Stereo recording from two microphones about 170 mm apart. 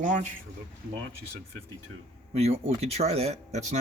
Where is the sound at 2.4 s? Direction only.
40° right (ahead or behind).